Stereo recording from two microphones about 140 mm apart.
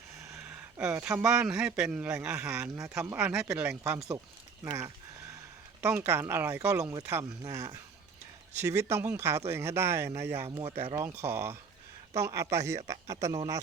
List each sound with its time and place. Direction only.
0.4 s speech: 10° right (ahead or behind)
10.7 s speech: 45° right (ahead or behind)
10.9 s speech: 20° right (ahead or behind)